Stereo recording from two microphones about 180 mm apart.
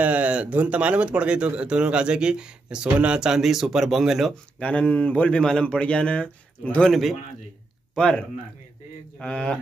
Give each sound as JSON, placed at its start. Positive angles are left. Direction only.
{"t": 0.0, "sound": "speech", "side_deg": -10}